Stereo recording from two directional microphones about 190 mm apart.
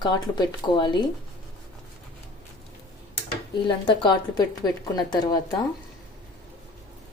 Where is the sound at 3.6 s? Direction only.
25° left (ahead or behind).